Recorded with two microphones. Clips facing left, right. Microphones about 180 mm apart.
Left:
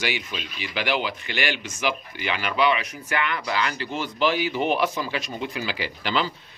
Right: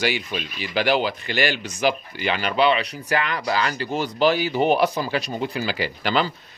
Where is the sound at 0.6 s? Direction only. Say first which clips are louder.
Right 5 dB; 40° right (ahead or behind).